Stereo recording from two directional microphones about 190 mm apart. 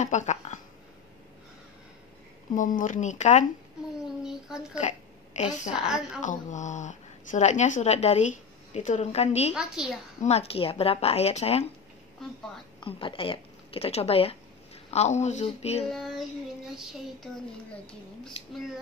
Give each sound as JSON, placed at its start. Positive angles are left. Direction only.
{"t": 0.0, "sound": "a sound", "side_deg": 40}
{"t": 2.5, "sound": "a woman's voice", "side_deg": 45}
{"t": 4.2, "sound": "a sound", "side_deg": -5}
{"t": 4.7, "sound": "a sound", "side_deg": 40}
{"t": 5.7, "sound": "child singing", "side_deg": -5}
{"t": 6.2, "sound": "a woman's voice", "side_deg": 40}
{"t": 9.5, "sound": "child singing", "side_deg": -5}
{"t": 10.2, "sound": "a woman's voice", "side_deg": 30}
{"t": 12.8, "sound": "a woman's voice", "side_deg": 25}
{"t": 15.9, "sound": "child singing", "side_deg": 0}